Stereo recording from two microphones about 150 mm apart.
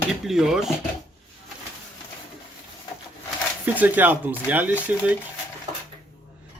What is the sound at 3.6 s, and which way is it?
Speech, 10° right (ahead or behind).